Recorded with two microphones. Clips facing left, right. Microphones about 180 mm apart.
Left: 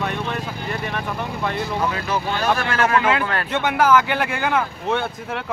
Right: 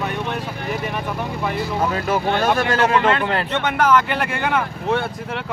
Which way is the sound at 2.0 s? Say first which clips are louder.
Right 4 dB; 55° right (ahead or behind).